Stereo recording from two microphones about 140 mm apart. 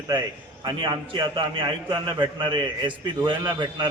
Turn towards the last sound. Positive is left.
turn(degrees=-35)  # may be behind; listen again after turning